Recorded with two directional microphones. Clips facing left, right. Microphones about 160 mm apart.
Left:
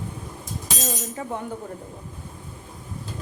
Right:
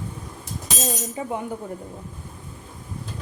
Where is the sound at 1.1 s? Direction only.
15° right (ahead or behind).